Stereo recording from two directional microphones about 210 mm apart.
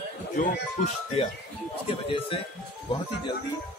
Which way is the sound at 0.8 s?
35° left (ahead or behind).